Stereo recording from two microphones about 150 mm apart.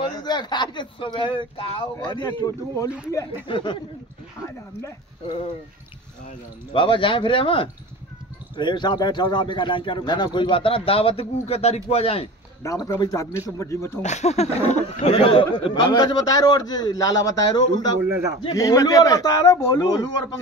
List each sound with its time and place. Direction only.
0.2 s a man's voice: 30° left (ahead or behind)
3.4 s a man's voice: 35° left (ahead or behind)
5.2 s a man's voice: 35° left (ahead or behind)
6.7 s a man's voice: 35° left (ahead or behind)
12.6 s speech: 20° left (ahead or behind)
14.0 s speech: 50° left (ahead or behind); by 20.1 s 25° left (ahead or behind)